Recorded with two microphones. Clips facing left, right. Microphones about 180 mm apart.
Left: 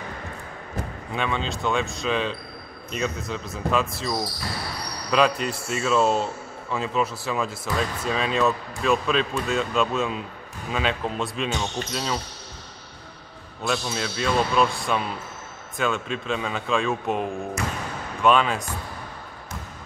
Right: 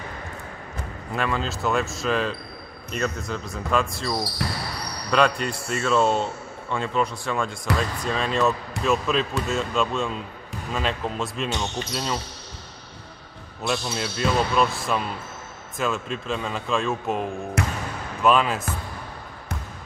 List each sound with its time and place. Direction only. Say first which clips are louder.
1.1 s a man's voice: right 1 dB; centre (ahead or behind)
13.7 s a man's voice: even; centre (ahead or behind)
17.6 s speech: right 6 dB; 65° right (ahead or behind)
18.2 s a man's voice: even; 5° right (ahead or behind)